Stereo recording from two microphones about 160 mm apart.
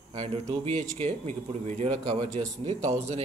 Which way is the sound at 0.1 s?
40° right (ahead or behind).